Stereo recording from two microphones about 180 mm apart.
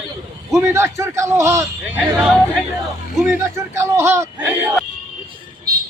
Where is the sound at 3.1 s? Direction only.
10° right (ahead or behind).